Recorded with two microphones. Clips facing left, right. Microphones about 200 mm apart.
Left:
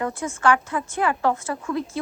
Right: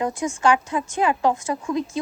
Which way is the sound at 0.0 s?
15° right (ahead or behind).